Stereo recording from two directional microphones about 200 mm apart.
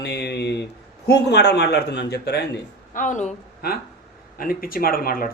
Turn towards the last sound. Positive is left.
turn(degrees=45)  # may be behind; listen again after turning